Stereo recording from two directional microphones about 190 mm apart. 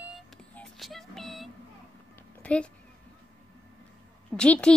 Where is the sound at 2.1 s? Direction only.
5° left (ahead or behind).